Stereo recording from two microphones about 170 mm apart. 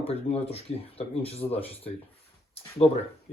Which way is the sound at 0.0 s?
40° left (ahead or behind).